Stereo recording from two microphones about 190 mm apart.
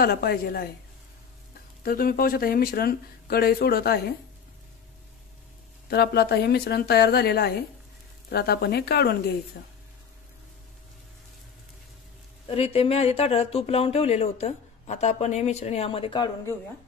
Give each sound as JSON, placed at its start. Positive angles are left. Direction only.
{"t": 0.0, "sound": "speech", "side_deg": 50}
{"t": 1.8, "sound": "speech", "side_deg": 50}
{"t": 5.9, "sound": "speech", "side_deg": 60}
{"t": 12.4, "sound": "speech", "side_deg": 30}